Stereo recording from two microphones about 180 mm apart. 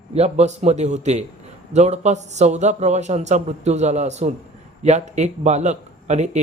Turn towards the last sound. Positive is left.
turn(degrees=-40)  # may be behind; listen again after turning